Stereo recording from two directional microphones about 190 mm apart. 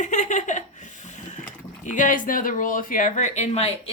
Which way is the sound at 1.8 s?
40° left (ahead or behind).